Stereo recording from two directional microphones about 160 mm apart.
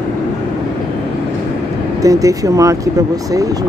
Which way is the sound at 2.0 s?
20° right (ahead or behind).